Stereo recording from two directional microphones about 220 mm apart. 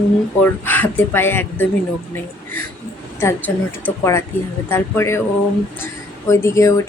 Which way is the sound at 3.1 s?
10° left (ahead or behind).